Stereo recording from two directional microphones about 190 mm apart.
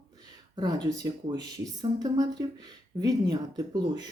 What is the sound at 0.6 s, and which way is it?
Speech, 20° right (ahead or behind).